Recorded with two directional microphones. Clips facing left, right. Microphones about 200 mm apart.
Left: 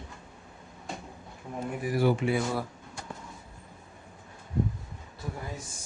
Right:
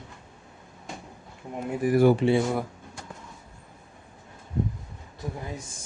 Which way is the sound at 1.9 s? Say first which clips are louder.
Right 6 dB; 50° right (ahead or behind).